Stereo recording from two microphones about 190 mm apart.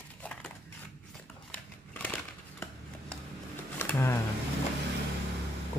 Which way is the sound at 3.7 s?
10° left (ahead or behind).